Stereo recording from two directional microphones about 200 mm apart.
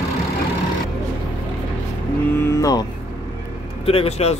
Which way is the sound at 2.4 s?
15° left (ahead or behind).